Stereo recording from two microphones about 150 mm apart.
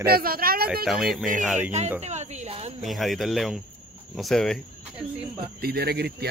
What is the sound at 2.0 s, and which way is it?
Speech, 50° right (ahead or behind).